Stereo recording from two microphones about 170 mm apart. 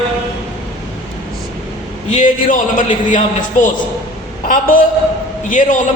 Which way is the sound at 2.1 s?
50° left (ahead or behind).